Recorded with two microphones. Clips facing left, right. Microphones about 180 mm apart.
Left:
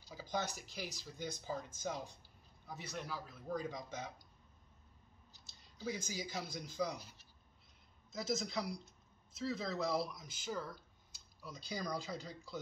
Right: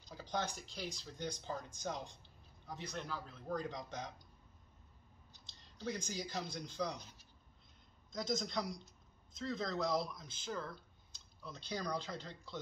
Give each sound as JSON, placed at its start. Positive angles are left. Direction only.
{"t": 0.0, "sound": "speech", "side_deg": 5}
{"t": 5.5, "sound": "speech", "side_deg": 5}
{"t": 8.1, "sound": "speech", "side_deg": 5}